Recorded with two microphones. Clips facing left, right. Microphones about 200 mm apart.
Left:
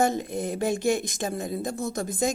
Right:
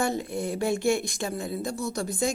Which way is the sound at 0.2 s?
20° left (ahead or behind).